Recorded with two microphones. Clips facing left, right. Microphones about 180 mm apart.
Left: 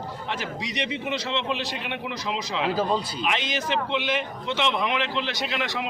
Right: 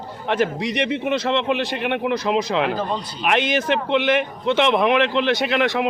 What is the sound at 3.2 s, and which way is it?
Speech, 60° right (ahead or behind).